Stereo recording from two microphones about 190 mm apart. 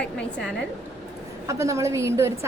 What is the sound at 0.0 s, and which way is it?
Speech, 5° left (ahead or behind).